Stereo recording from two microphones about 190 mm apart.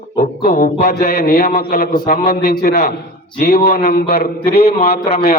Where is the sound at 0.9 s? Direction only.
60° left (ahead or behind).